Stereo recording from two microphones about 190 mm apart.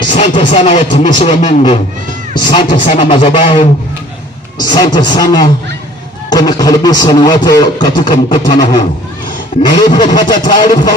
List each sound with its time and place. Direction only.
0.1 s a man's voice: 30° left (ahead or behind)